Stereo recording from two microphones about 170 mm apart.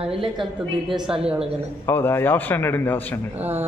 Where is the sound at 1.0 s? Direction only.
5° right (ahead or behind).